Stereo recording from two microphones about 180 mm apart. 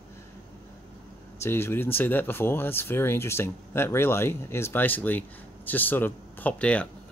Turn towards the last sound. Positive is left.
turn(degrees=5)  # may be behind; listen again after turning